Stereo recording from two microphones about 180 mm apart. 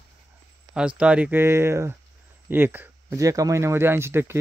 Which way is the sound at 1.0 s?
5° right (ahead or behind).